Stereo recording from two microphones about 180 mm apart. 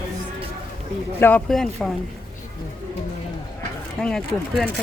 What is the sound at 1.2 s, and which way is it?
Speech, 10° left (ahead or behind).